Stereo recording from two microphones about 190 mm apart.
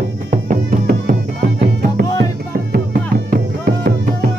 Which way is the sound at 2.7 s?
55° right (ahead or behind).